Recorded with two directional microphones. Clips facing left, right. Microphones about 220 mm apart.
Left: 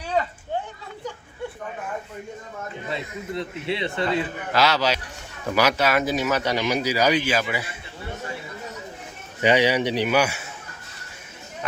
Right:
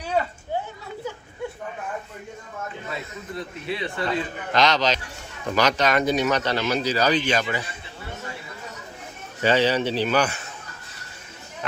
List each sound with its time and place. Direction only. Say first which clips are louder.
2.9 s a man's voice: left 7 dB; 25° left (ahead or behind)
4.5 s speech: even; 5° left (ahead or behind)
9.4 s speech: left 1 dB; 15° left (ahead or behind)